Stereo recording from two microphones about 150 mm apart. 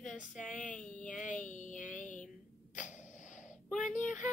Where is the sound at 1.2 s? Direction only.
55° left (ahead or behind).